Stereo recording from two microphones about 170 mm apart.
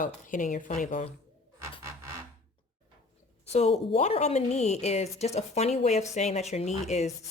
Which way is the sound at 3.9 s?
40° left (ahead or behind).